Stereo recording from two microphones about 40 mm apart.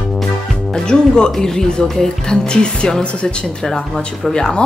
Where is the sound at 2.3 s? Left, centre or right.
Left.